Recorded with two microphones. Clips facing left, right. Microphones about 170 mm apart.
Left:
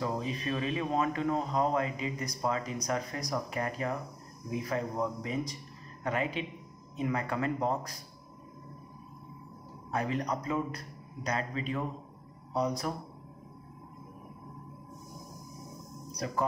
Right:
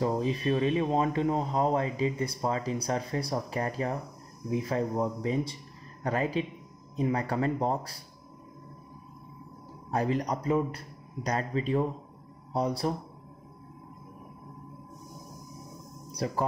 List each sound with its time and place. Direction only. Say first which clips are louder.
0.0 s speech: right 6 dB; 30° right (ahead or behind)
9.8 s speech: right 4 dB; 35° right (ahead or behind)
16.1 s speech: right 2 dB; 30° right (ahead or behind)